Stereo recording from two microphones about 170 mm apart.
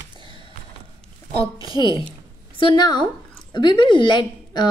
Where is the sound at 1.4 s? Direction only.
20° right (ahead or behind).